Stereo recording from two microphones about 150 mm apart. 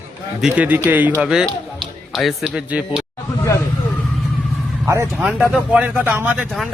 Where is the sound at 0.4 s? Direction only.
10° right (ahead or behind).